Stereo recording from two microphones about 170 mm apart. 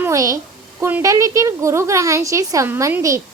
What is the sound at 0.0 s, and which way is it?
A woman's voice, 20° right (ahead or behind).